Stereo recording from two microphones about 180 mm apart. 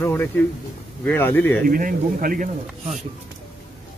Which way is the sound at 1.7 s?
50° right (ahead or behind).